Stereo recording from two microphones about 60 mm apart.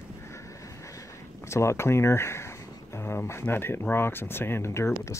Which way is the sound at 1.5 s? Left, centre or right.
Left.